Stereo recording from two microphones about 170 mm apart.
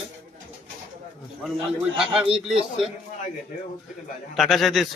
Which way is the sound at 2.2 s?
30° right (ahead or behind).